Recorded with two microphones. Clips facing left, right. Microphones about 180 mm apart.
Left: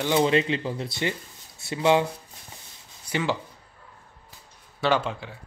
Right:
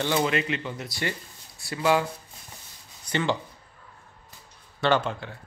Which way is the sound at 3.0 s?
5° left (ahead or behind).